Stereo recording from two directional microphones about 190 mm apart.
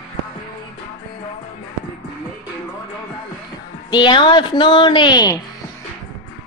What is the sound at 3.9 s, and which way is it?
Speech, 25° left (ahead or behind).